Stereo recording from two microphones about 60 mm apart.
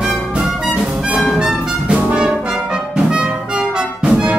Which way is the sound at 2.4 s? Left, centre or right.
Centre.